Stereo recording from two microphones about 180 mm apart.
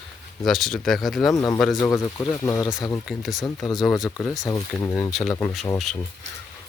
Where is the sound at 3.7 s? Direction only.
Centre (ahead or behind).